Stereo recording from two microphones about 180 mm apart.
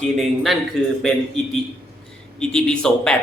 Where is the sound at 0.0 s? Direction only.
Centre (ahead or behind).